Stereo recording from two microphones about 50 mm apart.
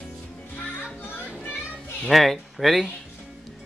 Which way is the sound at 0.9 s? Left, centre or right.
Left.